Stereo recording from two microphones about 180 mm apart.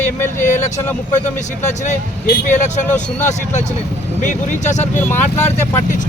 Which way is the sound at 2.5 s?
40° left (ahead or behind).